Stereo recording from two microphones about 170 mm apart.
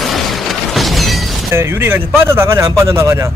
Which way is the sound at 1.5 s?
15° right (ahead or behind).